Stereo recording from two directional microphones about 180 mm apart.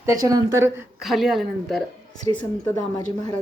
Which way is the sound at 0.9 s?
Centre (ahead or behind).